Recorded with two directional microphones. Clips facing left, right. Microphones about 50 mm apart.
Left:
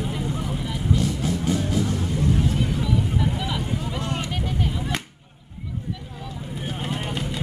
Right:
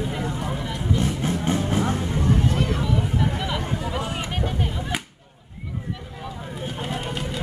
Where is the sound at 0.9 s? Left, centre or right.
Right.